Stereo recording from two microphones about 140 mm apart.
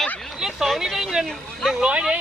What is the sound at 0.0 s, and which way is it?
Speech, centre (ahead or behind).